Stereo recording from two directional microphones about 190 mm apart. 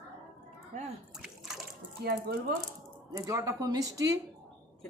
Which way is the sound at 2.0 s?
55° right (ahead or behind).